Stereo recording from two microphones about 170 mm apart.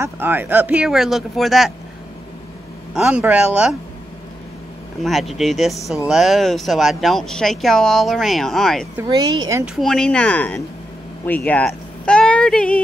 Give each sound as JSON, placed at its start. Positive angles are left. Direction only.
{"t": 0.0, "sound": "speech", "side_deg": -10}
{"t": 2.9, "sound": "speech", "side_deg": -5}
{"t": 5.0, "sound": "speech", "side_deg": 0}
{"t": 9.1, "sound": "speech", "side_deg": -25}
{"t": 9.8, "sound": "speech", "side_deg": 5}